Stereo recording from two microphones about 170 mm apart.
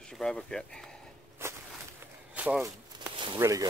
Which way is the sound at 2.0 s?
5° right (ahead or behind).